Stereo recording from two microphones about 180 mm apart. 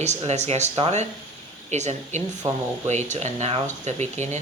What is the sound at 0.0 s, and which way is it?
Speech, 40° right (ahead or behind).